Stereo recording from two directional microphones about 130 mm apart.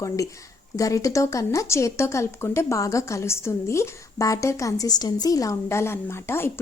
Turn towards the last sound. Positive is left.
turn(degrees=20)  # may be behind; listen again after turning